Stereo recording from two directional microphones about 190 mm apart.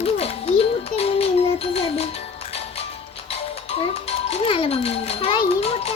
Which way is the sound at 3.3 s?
30° left (ahead or behind).